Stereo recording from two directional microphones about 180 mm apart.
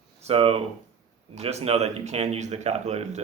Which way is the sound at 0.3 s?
35° right (ahead or behind).